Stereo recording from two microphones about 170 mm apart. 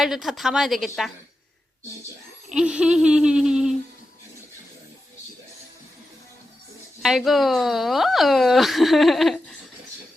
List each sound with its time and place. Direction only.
0.0 s speech: centre (ahead or behind)
2.5 s speech: 5° right (ahead or behind)
7.0 s speech: centre (ahead or behind)